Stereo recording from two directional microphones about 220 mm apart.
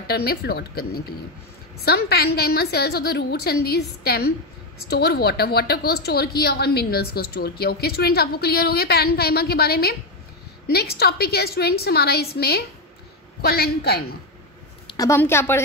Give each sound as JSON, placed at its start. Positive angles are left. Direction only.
{"t": 0.1, "sound": "a woman's voice", "side_deg": 45}
{"t": 14.9, "sound": "a woman's voice", "side_deg": 15}